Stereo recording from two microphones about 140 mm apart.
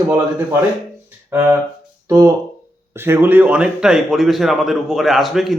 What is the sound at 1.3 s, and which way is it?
A man's voice, 15° right (ahead or behind).